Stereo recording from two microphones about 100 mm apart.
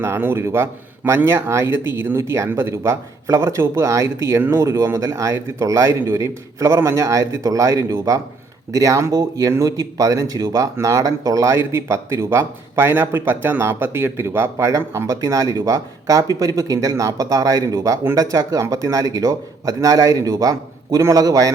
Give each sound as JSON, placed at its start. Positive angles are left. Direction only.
{"t": 0.0, "sound": "speech", "side_deg": -25}